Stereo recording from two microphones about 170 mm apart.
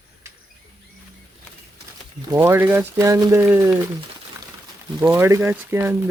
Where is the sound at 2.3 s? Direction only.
15° right (ahead or behind).